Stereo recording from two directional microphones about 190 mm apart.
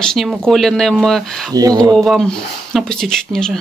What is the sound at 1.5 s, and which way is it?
Speech, 20° right (ahead or behind).